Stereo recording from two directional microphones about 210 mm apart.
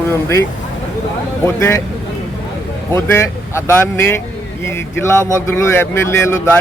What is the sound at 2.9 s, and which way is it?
Speech, 15° left (ahead or behind).